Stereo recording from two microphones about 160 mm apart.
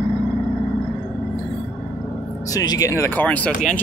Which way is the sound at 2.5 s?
25° left (ahead or behind).